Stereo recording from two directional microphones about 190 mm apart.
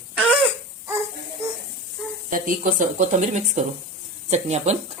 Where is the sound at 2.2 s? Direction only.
45° right (ahead or behind).